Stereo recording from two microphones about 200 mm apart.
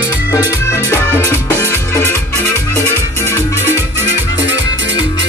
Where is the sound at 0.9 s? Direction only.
15° left (ahead or behind).